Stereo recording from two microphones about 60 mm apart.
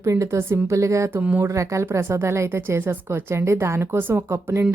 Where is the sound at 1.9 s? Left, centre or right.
Right.